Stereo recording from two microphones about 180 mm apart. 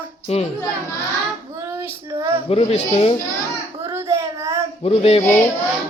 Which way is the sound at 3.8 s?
15° right (ahead or behind).